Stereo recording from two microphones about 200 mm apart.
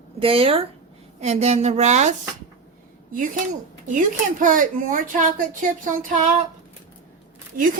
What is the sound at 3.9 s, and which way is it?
Speech, 40° right (ahead or behind).